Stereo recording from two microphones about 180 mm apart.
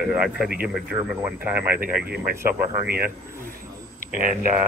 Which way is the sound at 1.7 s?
55° right (ahead or behind).